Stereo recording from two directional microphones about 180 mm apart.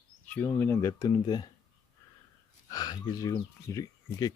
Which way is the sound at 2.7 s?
20° left (ahead or behind).